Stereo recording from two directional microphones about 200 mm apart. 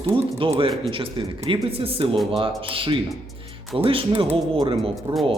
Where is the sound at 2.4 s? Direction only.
25° right (ahead or behind).